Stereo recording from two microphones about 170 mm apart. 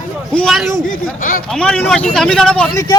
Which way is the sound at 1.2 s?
55° left (ahead or behind).